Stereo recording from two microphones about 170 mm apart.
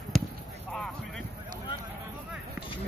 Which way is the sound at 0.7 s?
Centre (ahead or behind).